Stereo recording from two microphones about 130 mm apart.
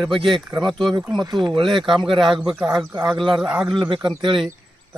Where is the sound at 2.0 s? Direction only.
40° right (ahead or behind).